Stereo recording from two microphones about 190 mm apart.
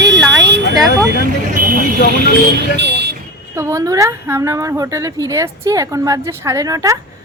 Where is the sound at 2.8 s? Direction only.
65° right (ahead or behind).